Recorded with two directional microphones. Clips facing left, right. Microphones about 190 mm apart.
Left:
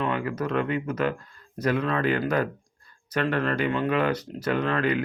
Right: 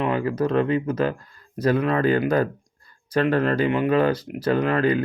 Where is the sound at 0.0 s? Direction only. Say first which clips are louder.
Right 5 dB; 30° right (ahead or behind).